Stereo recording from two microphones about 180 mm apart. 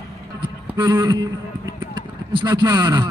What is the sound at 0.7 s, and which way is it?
A man's voice, 20° right (ahead or behind).